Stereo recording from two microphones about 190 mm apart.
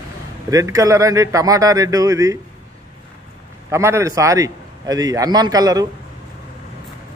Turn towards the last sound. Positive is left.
turn(degrees=-20)  # may be behind; listen again after turning